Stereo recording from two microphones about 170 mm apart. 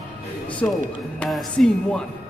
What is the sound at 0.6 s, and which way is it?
Speech, 5° left (ahead or behind).